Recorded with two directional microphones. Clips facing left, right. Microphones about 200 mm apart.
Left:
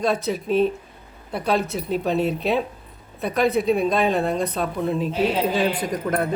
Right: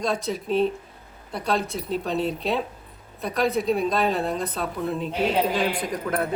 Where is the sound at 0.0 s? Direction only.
5° left (ahead or behind).